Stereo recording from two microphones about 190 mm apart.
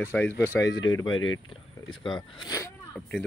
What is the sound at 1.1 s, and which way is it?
Speech, 90° left.